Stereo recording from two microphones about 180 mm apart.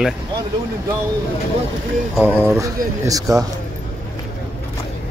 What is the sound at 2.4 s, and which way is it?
Speech, 15° right (ahead or behind).